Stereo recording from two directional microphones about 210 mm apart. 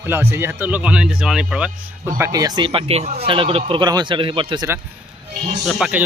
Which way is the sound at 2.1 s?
15° right (ahead or behind).